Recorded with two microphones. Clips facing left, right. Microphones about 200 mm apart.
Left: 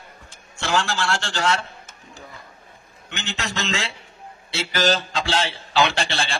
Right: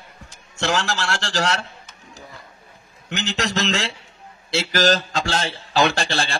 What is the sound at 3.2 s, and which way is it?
A man's voice, 40° right (ahead or behind).